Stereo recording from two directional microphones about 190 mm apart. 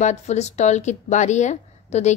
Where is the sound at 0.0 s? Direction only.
35° left (ahead or behind).